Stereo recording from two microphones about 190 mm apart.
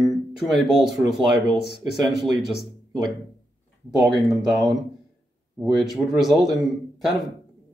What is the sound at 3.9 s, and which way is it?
Speech, centre (ahead or behind).